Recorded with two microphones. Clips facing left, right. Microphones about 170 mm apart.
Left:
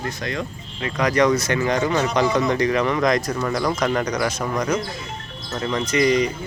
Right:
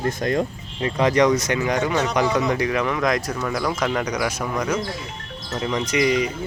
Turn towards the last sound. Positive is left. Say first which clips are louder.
# left 2 dB
turn(degrees=-5)  # may be behind; listen again after turning